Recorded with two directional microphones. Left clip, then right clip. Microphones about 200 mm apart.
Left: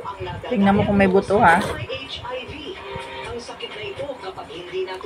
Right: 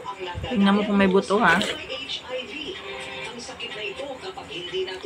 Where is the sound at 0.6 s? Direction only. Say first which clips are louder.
Left 4 dB; 20° right (ahead or behind).